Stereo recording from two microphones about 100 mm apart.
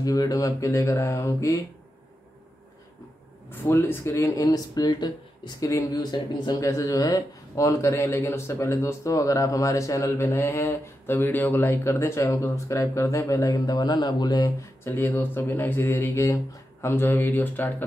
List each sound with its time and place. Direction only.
0.0 s speech: 35° left (ahead or behind)
3.4 s speech: 25° left (ahead or behind)
4.8 s speech: 50° left (ahead or behind)
5.6 s speech: 35° left (ahead or behind)
15.0 s speech: 20° left (ahead or behind)
16.1 s speech: 35° left (ahead or behind)
16.8 s speech: 25° left (ahead or behind)